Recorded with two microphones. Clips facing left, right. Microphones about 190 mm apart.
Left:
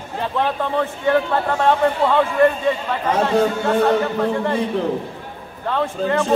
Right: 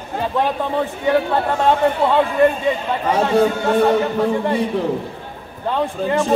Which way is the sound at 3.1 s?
10° right (ahead or behind).